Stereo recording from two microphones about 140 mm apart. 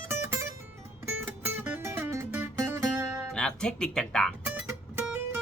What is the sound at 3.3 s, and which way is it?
Speech, 5° left (ahead or behind).